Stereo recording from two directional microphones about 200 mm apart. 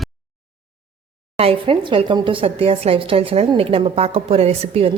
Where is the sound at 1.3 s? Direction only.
30° right (ahead or behind).